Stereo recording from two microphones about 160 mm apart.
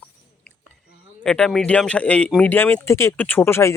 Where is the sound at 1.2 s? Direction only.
5° left (ahead or behind).